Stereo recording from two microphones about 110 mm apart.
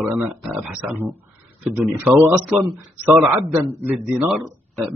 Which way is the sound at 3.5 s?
20° right (ahead or behind).